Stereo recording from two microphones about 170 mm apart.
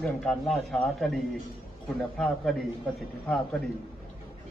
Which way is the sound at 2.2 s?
5° left (ahead or behind).